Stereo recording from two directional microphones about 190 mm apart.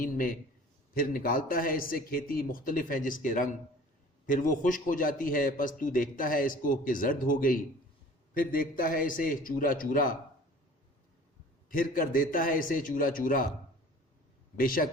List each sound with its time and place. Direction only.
0.0 s a man's voice: 45° left (ahead or behind)
11.7 s a man's voice: 45° left (ahead or behind)
14.5 s a man's voice: 45° left (ahead or behind)